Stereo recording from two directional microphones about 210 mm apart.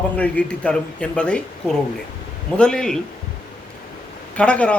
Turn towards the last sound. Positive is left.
turn(degrees=5)  # may be behind; listen again after turning